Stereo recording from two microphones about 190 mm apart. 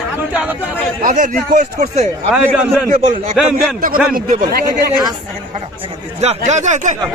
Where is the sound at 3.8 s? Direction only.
50° right (ahead or behind).